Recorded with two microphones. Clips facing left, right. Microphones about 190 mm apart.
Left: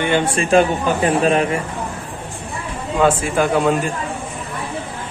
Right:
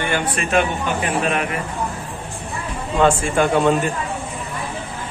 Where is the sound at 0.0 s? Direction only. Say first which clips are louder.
Left 4 dB; 25° left (ahead or behind).